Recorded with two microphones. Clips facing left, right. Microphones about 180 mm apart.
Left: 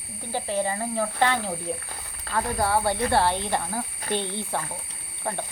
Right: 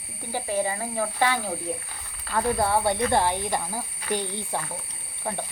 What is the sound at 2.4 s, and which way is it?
Speech, 20° right (ahead or behind).